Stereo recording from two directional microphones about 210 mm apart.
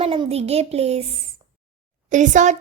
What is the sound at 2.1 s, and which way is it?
Speech, 35° right (ahead or behind).